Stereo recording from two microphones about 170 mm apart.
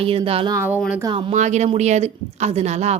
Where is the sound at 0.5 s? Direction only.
15° right (ahead or behind).